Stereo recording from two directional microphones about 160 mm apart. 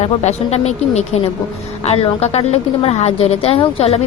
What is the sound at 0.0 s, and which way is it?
A woman's voice, 40° left (ahead or behind).